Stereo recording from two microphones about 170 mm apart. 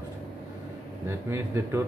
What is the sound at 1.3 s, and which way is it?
Speech, 15° right (ahead or behind).